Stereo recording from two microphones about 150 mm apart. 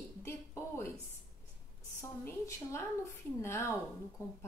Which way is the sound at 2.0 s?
20° left (ahead or behind).